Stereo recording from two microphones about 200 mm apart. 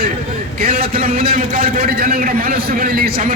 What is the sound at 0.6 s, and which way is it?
A man's voice, 45° right (ahead or behind).